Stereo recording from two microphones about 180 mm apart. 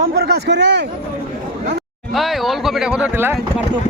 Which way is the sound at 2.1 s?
Centre (ahead or behind).